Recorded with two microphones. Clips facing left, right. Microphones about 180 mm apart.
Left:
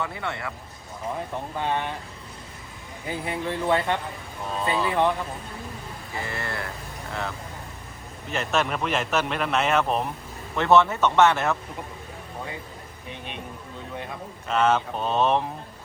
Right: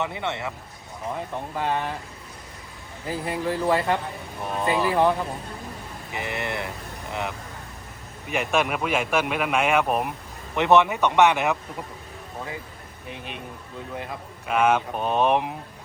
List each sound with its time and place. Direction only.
0.0 s speech: 20° right (ahead or behind)
1.5 s speech: centre (ahead or behind)
3.1 s speech: centre (ahead or behind)
4.4 s speech: 15° right (ahead or behind)
4.9 s speech: 5° right (ahead or behind)
6.1 s speech: 20° right (ahead or behind)
13.9 s speech: 5° right (ahead or behind)